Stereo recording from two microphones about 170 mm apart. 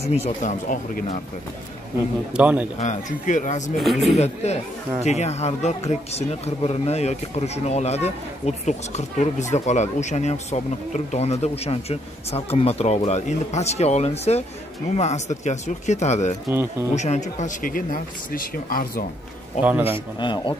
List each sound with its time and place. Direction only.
0.4 s speech: 50° left (ahead or behind)
2.3 s a man's voice: 10° right (ahead or behind)
2.8 s speech: 45° left (ahead or behind)
3.7 s speech: centre (ahead or behind)
4.2 s speech: 40° left (ahead or behind); by 19.0 s 55° left (ahead or behind)
19.6 s a man's voice: 10° right (ahead or behind)
20.2 s a man's voice: 25° left (ahead or behind)